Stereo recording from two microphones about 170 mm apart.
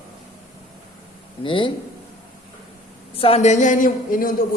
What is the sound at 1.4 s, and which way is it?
Speech, 30° left (ahead or behind).